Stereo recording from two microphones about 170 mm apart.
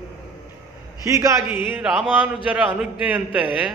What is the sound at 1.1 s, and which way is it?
Speech, 15° right (ahead or behind).